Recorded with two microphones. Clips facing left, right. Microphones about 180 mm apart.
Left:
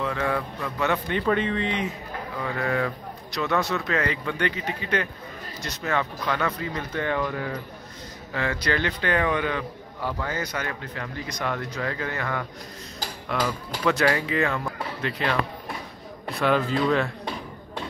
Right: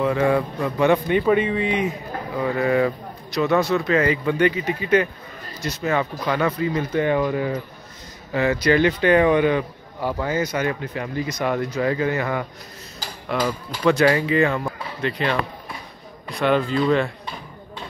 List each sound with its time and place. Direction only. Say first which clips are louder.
0.0 s speech: right 7 dB; 15° right (ahead or behind)
3.3 s speech: right 6 dB; centre (ahead or behind)
13.8 s speech: right 5 dB; centre (ahead or behind)